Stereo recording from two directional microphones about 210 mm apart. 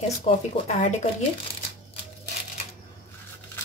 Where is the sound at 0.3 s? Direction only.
25° left (ahead or behind).